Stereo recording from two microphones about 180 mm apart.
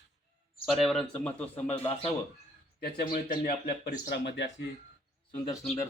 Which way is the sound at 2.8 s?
50° left (ahead or behind).